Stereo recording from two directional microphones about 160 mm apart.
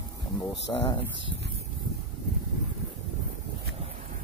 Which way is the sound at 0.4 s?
30° left (ahead or behind).